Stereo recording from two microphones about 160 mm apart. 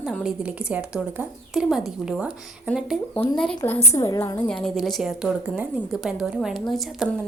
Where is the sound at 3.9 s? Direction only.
20° left (ahead or behind).